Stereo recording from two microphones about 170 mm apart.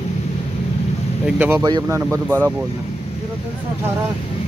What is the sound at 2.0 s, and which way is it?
Speech, 15° right (ahead or behind).